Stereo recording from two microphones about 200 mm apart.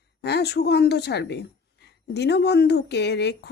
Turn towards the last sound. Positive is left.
turn(degrees=55)  # may be behind; listen again after turning